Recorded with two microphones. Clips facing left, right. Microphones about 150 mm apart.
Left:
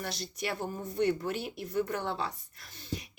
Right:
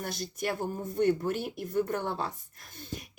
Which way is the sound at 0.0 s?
50° right (ahead or behind).